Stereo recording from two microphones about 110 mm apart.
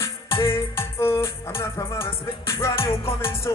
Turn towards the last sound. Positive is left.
turn(degrees=25)  # may be behind; listen again after turning